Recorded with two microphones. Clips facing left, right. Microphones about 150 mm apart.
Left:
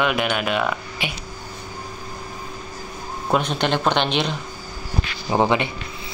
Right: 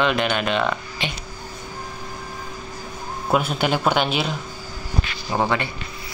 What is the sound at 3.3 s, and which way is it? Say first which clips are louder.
Speech: even; 5° right (ahead or behind).